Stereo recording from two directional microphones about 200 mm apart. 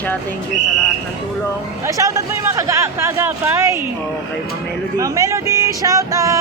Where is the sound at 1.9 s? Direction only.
15° right (ahead or behind).